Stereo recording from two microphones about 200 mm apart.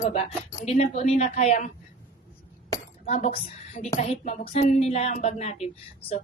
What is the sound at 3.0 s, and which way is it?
A woman's voice, 30° left (ahead or behind).